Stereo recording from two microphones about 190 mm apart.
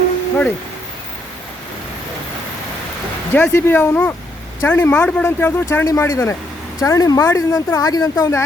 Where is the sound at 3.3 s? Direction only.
10° left (ahead or behind).